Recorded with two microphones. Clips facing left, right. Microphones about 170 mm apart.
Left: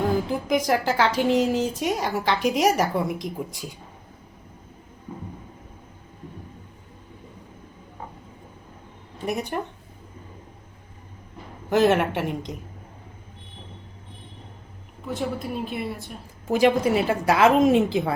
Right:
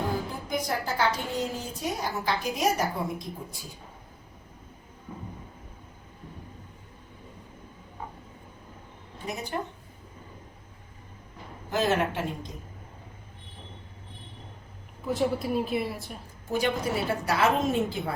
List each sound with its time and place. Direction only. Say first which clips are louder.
0.4 s a woman's voice: left 8 dB; 90° left
9.2 s speech: left 7 dB; 65° left (ahead or behind)
11.7 s a woman's voice: left 7 dB; 65° left (ahead or behind)
15.0 s a woman's voice: right 2 dB; centre (ahead or behind)
16.5 s a woman's voice: left 8 dB; 90° left